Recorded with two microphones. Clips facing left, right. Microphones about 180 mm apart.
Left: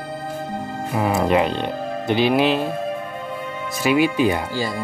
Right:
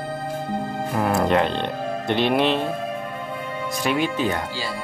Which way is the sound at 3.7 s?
5° left (ahead or behind).